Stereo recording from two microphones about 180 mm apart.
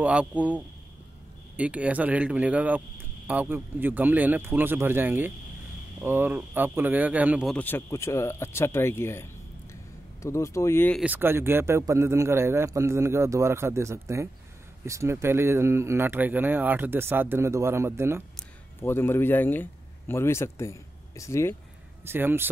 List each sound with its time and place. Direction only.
0.0 s speech: 5° right (ahead or behind)
1.6 s speech: 5° right (ahead or behind)
7.5 s speech: 10° left (ahead or behind)
11.0 s speech: 10° right (ahead or behind)
18.3 s speech: 10° left (ahead or behind)
22.0 s speech: 10° right (ahead or behind)